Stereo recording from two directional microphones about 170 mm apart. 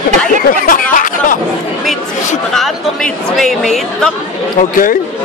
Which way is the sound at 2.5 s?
Centre (ahead or behind).